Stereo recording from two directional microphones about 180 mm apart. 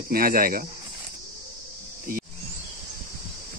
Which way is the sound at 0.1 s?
55° right (ahead or behind).